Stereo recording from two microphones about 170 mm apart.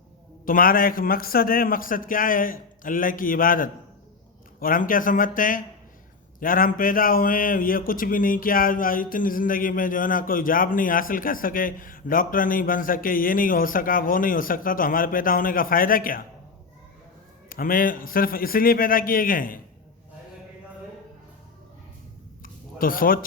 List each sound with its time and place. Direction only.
0.4 s a man's voice: 55° left (ahead or behind)
17.5 s a man's voice: 55° left (ahead or behind)
22.4 s a sound: 55° left (ahead or behind)